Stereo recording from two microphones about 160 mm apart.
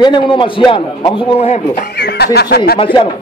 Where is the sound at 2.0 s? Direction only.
90° left; by 2.8 s 70° left (ahead or behind).